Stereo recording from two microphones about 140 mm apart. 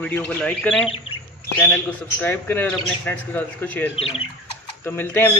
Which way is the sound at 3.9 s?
45° left (ahead or behind).